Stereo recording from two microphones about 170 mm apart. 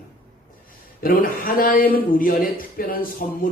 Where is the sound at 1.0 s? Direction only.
55° left (ahead or behind).